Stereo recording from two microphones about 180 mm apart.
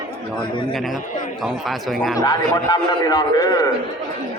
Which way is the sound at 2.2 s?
20° left (ahead or behind).